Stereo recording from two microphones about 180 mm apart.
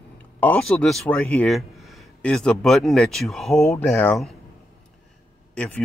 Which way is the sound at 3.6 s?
15° left (ahead or behind).